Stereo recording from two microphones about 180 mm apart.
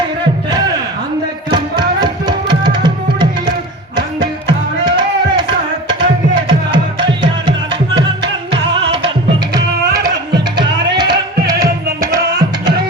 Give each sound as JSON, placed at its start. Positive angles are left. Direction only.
{"t": 1.5, "sound": "music", "side_deg": -25}
{"t": 9.6, "sound": "music", "side_deg": -20}